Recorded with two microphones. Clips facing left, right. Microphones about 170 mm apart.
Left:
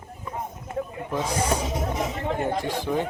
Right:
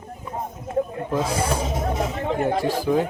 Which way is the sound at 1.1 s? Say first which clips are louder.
Right 3 dB; 10° right (ahead or behind).